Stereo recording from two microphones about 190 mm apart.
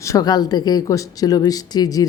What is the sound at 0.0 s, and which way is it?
Speech, 20° left (ahead or behind).